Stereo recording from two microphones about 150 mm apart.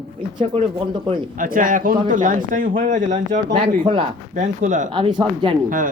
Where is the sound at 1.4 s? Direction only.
65° right (ahead or behind).